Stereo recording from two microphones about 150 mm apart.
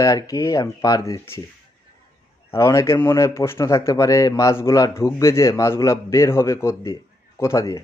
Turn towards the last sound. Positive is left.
turn(degrees=20)  # may be behind; listen again after turning